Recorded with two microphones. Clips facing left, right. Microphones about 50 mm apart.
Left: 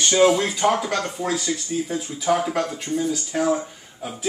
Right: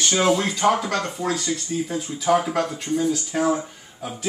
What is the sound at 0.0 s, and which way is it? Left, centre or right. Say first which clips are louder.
Speech: left 3 dB; centre.